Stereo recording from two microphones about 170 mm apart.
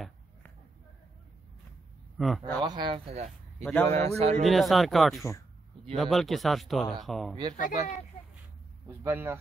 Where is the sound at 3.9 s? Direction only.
40° right (ahead or behind).